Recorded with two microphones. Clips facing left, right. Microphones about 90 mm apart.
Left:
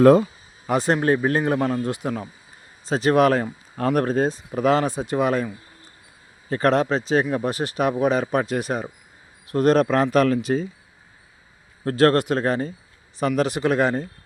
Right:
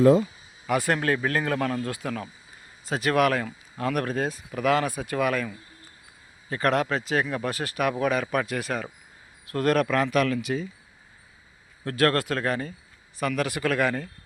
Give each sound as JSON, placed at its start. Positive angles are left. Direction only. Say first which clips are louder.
{"t": 0.7, "sound": "speech", "louder": "left 4 dB", "side_deg": 25}
{"t": 6.5, "sound": "speech", "louder": "left 5 dB", "side_deg": 30}
{"t": 11.9, "sound": "speech", "louder": "left 6 dB", "side_deg": 30}